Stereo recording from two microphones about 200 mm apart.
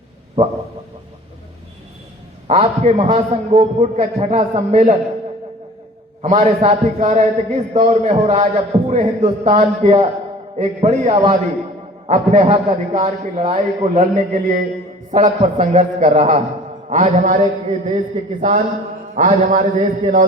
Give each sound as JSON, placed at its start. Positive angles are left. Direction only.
{"t": 0.4, "sound": "a man's voice", "side_deg": -30}
{"t": 2.5, "sound": "a man's voice", "side_deg": -30}
{"t": 6.2, "sound": "a man's voice", "side_deg": -35}